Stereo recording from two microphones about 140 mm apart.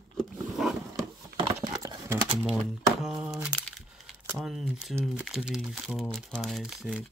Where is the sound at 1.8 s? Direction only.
25° right (ahead or behind).